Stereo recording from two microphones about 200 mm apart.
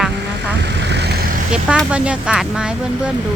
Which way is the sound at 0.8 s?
60° right (ahead or behind).